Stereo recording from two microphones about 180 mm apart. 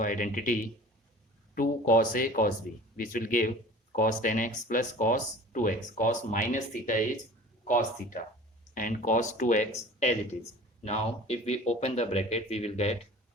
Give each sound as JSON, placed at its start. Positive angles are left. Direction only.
{"t": 0.0, "sound": "speech", "side_deg": 45}